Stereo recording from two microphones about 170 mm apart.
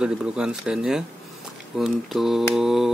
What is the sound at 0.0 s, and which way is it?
Speech, 5° right (ahead or behind).